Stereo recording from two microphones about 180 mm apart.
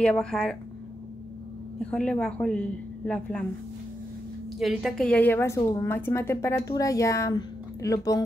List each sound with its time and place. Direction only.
0.0 s a woman's voice: 5° left (ahead or behind)
1.8 s a woman's voice: 5° left (ahead or behind)
4.6 s speech: centre (ahead or behind); by 8.2 s 20° left (ahead or behind)